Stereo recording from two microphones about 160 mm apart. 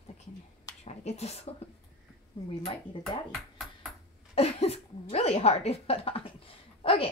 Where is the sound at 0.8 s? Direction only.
40° left (ahead or behind).